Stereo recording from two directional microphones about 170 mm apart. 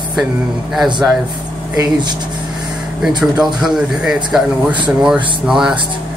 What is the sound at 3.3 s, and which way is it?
Speech, 5° right (ahead or behind).